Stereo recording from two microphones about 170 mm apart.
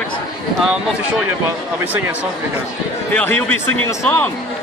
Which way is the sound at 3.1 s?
10° left (ahead or behind).